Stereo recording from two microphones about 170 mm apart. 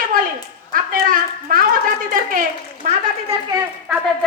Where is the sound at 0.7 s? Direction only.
55° right (ahead or behind).